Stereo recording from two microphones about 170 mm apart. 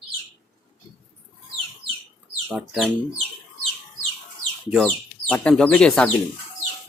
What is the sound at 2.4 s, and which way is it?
Speech, centre (ahead or behind).